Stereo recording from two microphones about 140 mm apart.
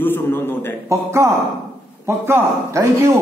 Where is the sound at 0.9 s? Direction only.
20° right (ahead or behind).